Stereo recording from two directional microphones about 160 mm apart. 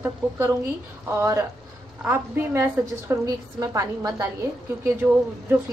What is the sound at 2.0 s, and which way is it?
A woman's voice, 15° right (ahead or behind).